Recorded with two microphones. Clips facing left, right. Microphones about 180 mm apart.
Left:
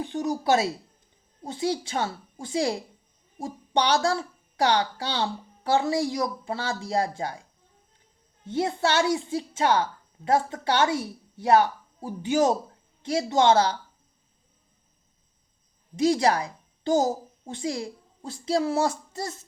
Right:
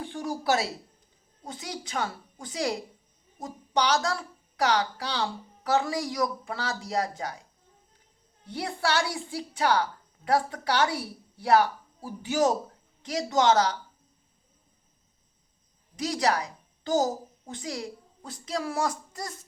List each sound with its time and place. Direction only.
0.0 s speech: 20° left (ahead or behind)
8.4 s speech: 25° left (ahead or behind)
16.0 s a child's voice: 30° left (ahead or behind)